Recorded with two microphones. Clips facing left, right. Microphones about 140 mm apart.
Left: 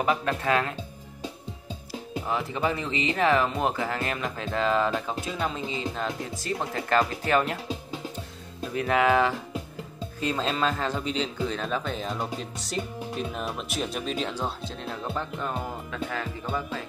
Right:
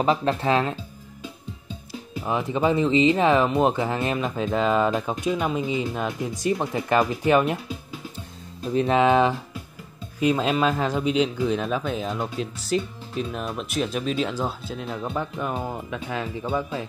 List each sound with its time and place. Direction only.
0.0 s speech: 30° right (ahead or behind)
2.1 s speech: 15° right (ahead or behind)
8.7 s speech: 25° right (ahead or behind)